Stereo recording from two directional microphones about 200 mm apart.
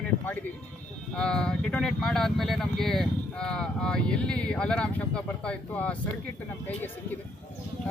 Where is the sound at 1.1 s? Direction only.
5° left (ahead or behind).